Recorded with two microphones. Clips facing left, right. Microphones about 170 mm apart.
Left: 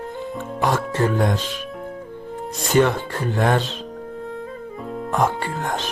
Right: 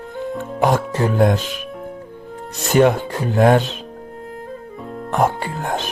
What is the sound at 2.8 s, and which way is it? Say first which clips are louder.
Speech: right 4 dB; 50° right (ahead or behind).